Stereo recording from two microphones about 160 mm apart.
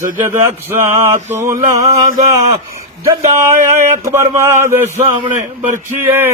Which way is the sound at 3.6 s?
20° right (ahead or behind).